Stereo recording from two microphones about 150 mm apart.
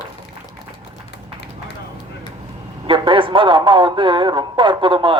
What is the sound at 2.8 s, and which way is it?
Speech, 35° right (ahead or behind).